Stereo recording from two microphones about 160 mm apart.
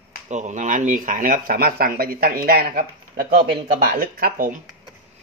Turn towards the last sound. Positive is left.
turn(degrees=-65)  # may be behind; listen again after turning